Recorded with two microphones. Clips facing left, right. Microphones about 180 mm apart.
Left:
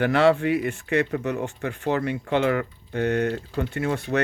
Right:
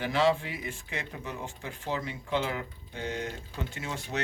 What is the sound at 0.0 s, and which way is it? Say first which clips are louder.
Speech: left 7 dB; 65° left (ahead or behind).